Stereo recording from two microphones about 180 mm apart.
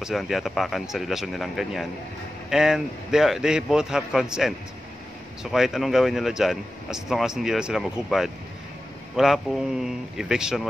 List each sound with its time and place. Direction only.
0.0 s speech: centre (ahead or behind)